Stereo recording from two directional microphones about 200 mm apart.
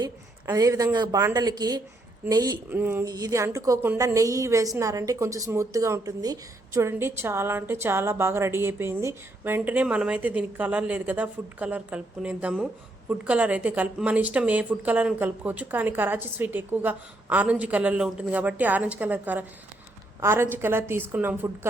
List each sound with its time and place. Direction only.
0.0 s a woman's voice: 20° right (ahead or behind)